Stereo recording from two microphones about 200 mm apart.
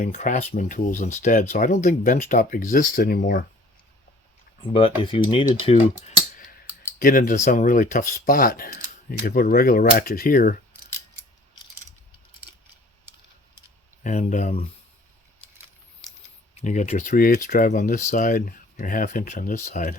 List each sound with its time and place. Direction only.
0.0 s speech: 40° left (ahead or behind)
4.6 s speech: 25° left (ahead or behind)
7.0 s speech: 45° left (ahead or behind)
14.0 s speech: 40° left (ahead or behind)
16.6 s speech: 35° left (ahead or behind)